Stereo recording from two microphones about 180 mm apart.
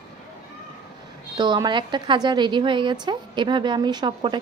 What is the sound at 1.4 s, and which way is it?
A woman's voice, 25° right (ahead or behind).